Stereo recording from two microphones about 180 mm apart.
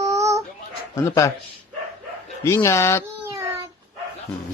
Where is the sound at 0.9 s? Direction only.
15° left (ahead or behind).